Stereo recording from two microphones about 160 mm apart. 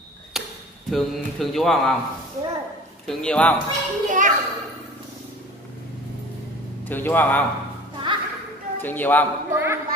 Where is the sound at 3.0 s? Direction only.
5° left (ahead or behind).